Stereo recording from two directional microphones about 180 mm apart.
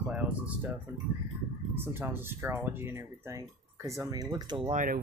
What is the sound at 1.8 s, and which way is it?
Speech, 10° right (ahead or behind).